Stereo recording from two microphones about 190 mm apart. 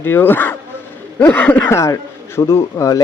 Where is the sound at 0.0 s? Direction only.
10° left (ahead or behind).